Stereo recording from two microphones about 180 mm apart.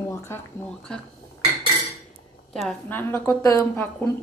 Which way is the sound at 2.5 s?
Centre (ahead or behind).